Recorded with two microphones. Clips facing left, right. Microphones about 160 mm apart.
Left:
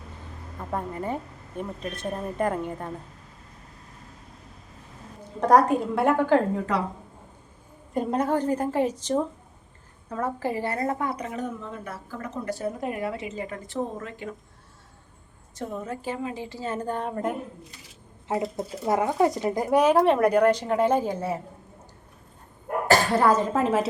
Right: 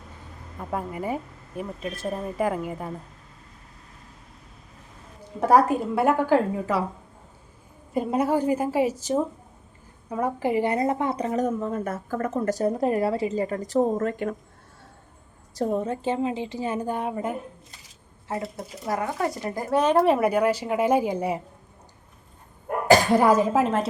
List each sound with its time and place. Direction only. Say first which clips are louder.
0.6 s a woman's voice: right 1 dB; 5° right (ahead or behind)
5.4 s a woman's voice: even; 5° right (ahead or behind)
7.9 s a woman's voice: right 1 dB; 5° right (ahead or behind); by 14.3 s 50° right (ahead or behind)
15.5 s a woman's voice: right 7 dB; 35° right (ahead or behind); by 17.3 s 5° right (ahead or behind)
18.3 s speech: left 4 dB; 20° left (ahead or behind)
20.0 s a woman's voice: left 1 dB; 5° right (ahead or behind)
22.9 s a woman's voice: right 3 dB; 10° right (ahead or behind)
23.6 s a woman's voice: left 1 dB; centre (ahead or behind)